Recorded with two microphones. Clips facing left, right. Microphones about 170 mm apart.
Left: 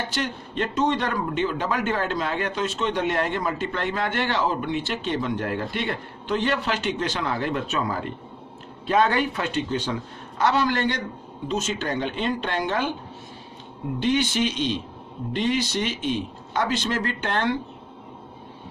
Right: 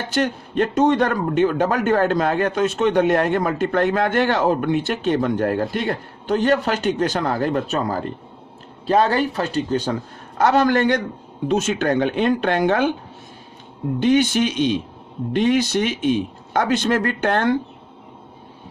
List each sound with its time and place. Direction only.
0.1 s a man's voice: 50° right (ahead or behind)
14.0 s a man's voice: 50° right (ahead or behind)